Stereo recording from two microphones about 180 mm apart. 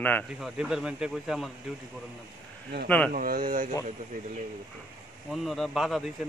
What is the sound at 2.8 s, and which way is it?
Speech, 10° left (ahead or behind).